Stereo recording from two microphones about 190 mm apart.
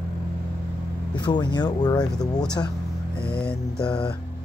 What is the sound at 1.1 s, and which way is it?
Speech, 20° left (ahead or behind).